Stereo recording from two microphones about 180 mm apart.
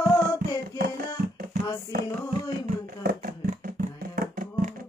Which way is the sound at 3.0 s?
50° right (ahead or behind).